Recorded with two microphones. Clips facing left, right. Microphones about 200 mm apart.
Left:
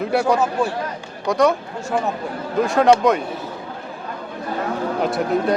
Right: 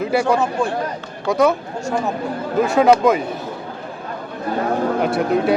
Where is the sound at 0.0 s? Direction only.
Centre (ahead or behind).